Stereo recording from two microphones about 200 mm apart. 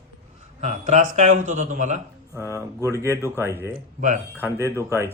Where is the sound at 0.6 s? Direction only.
35° right (ahead or behind).